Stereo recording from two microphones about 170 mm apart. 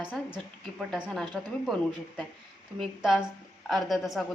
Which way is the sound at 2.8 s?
5° right (ahead or behind).